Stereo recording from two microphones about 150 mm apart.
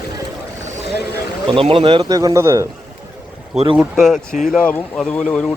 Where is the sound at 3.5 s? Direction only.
35° right (ahead or behind).